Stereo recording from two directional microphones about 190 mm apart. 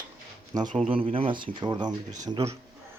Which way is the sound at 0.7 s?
30° right (ahead or behind).